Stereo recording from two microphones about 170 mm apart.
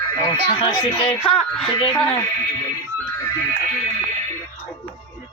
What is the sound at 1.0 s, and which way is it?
Music, 5° left (ahead or behind).